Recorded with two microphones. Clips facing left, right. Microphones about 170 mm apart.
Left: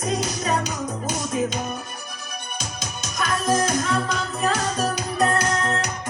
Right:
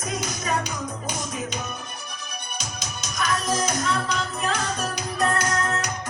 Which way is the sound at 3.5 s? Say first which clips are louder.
Left 7 dB; 50° left (ahead or behind).